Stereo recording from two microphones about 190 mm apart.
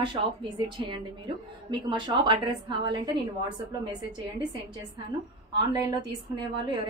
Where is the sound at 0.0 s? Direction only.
25° right (ahead or behind).